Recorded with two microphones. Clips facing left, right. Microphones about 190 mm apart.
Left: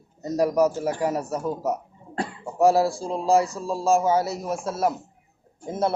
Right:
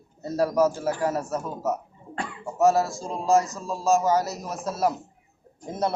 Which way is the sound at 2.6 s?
10° left (ahead or behind).